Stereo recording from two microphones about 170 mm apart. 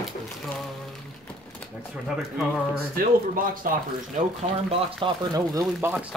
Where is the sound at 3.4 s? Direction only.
55° right (ahead or behind).